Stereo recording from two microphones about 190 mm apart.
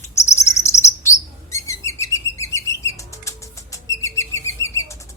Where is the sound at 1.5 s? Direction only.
15° left (ahead or behind).